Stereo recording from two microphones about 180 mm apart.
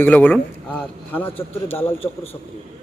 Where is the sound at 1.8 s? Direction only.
30° left (ahead or behind).